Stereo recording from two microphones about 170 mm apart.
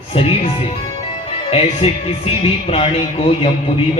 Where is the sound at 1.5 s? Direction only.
35° left (ahead or behind).